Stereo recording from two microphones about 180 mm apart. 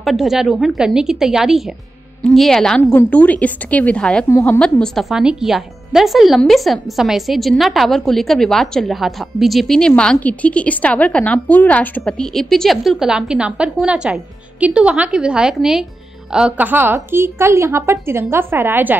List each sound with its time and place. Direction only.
0.0 s a woman's voice: centre (ahead or behind)
4.3 s a woman's voice: 15° left (ahead or behind)
4.6 s a woman's voice: 5° left (ahead or behind); by 18.9 s 10° right (ahead or behind)